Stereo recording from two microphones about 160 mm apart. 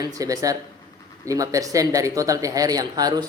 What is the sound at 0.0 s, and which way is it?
Speech, 20° right (ahead or behind).